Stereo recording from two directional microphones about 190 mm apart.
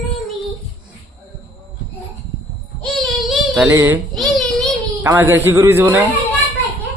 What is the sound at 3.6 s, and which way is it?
Speech, 15° right (ahead or behind).